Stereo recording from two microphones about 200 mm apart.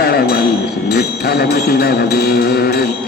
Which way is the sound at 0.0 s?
50° left (ahead or behind).